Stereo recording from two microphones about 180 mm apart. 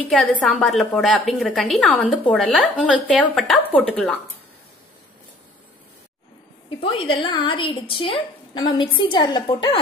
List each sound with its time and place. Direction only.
0.1 s a woman's voice: centre (ahead or behind)
6.8 s a woman's voice: 30° left (ahead or behind)